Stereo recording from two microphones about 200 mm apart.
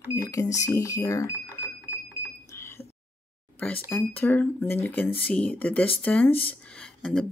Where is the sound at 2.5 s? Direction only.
15° left (ahead or behind).